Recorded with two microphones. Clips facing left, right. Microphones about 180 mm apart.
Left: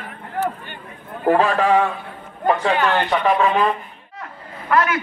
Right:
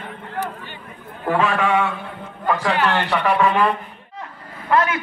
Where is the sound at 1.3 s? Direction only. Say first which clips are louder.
Left 3 dB; 35° left (ahead or behind).